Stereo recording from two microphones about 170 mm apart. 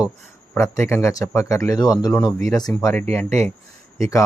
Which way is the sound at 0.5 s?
15° left (ahead or behind).